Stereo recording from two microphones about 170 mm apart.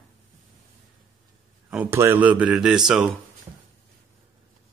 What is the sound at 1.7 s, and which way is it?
Speech, 10° right (ahead or behind).